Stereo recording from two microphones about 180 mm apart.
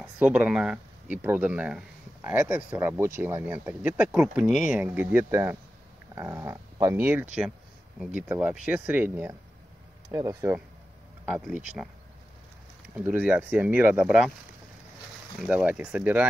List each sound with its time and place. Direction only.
0.0 s speech: 10° right (ahead or behind)
12.9 s speech: 10° right (ahead or behind)
15.3 s speech: 5° right (ahead or behind)